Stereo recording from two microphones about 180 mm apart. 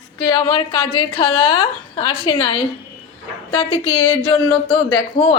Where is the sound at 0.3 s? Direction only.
25° left (ahead or behind).